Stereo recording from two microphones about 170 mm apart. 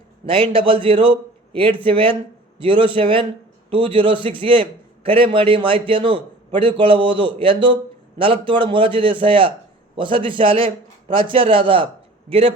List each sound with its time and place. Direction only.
0.3 s a man's voice: 30° right (ahead or behind)